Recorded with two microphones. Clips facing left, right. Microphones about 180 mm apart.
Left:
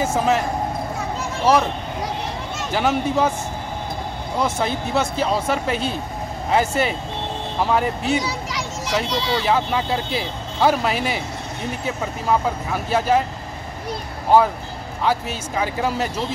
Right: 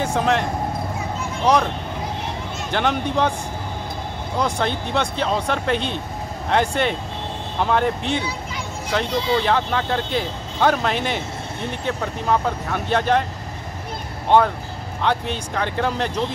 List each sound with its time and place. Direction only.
0.0 s speech: 5° left (ahead or behind)
2.7 s speech: 5° left (ahead or behind)
4.4 s speech: 5° left (ahead or behind)
8.3 s music: 85° left
8.9 s speech: 5° left (ahead or behind)
14.3 s speech: 5° left (ahead or behind)